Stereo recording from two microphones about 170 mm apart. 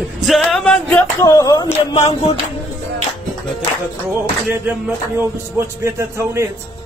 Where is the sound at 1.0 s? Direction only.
20° left (ahead or behind).